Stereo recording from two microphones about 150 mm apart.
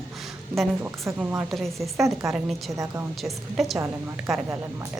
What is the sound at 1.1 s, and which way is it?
A woman's voice, 10° right (ahead or behind).